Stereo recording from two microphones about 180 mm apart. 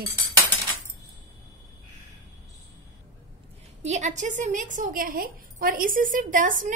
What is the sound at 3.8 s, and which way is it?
A woman's voice, 40° right (ahead or behind).